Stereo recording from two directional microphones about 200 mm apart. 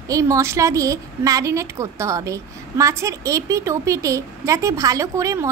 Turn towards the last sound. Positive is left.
turn(degrees=-15)  # may be behind; listen again after turning